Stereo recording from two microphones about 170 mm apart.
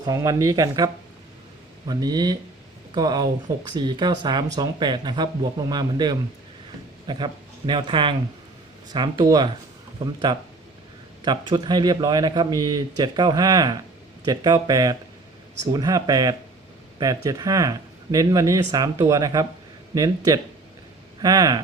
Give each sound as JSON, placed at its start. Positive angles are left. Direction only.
{"t": 0.0, "sound": "speech", "side_deg": -20}
{"t": 1.9, "sound": "speech", "side_deg": -25}
{"t": 11.2, "sound": "speech", "side_deg": -25}